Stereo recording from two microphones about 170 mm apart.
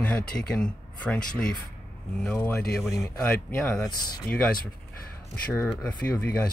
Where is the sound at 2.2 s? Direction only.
5° left (ahead or behind).